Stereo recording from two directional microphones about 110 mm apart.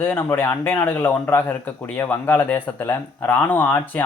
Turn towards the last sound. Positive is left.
turn(degrees=15)  # may be behind; listen again after turning